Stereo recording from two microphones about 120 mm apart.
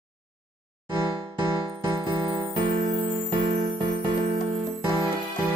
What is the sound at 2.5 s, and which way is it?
Music, 45° right (ahead or behind).